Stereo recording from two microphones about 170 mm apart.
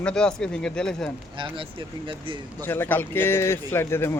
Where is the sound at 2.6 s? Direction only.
10° left (ahead or behind).